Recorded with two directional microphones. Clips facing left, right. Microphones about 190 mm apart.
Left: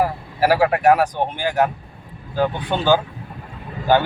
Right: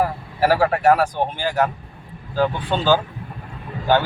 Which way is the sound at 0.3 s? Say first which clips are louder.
Left 1 dB; 10° left (ahead or behind).